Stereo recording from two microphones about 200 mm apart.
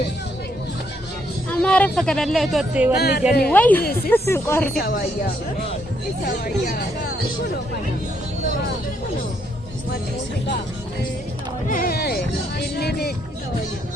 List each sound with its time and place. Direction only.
1.5 s speech: 5° left (ahead or behind)
3.0 s speech: 55° left (ahead or behind)
3.5 s speech: 10° left (ahead or behind)
4.8 s speech: 45° left (ahead or behind)
11.7 s speech: 45° left (ahead or behind)